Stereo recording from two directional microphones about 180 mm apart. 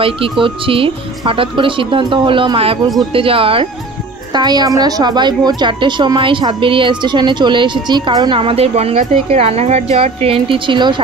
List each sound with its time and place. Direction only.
0.0 s a woman's voice: 30° right (ahead or behind)